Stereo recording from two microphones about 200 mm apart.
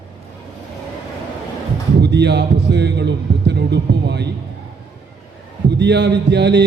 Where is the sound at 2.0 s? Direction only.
60° right (ahead or behind).